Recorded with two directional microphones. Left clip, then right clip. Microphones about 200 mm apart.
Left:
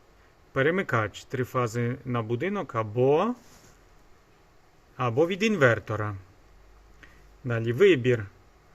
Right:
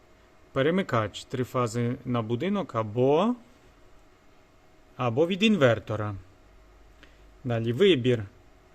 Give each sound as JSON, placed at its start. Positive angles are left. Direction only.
{"t": 0.5, "sound": "speech", "side_deg": -20}
{"t": 4.9, "sound": "speech", "side_deg": -20}